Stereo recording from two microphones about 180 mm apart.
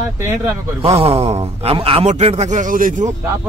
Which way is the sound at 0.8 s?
35° right (ahead or behind).